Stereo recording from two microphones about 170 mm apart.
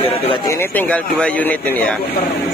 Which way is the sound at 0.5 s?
15° left (ahead or behind).